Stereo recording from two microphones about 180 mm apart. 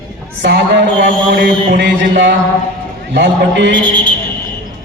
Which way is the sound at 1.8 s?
80° right.